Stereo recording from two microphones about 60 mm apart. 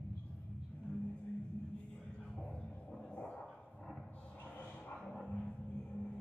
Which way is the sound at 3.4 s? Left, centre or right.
Centre.